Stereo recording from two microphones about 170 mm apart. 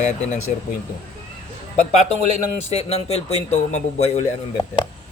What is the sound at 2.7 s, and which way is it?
Speech, 40° left (ahead or behind).